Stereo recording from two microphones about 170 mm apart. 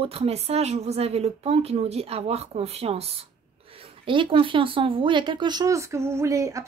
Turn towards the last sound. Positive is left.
turn(degrees=-20)  # may be behind; listen again after turning